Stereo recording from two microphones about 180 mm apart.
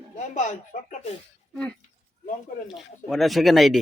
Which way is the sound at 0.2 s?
45° left (ahead or behind).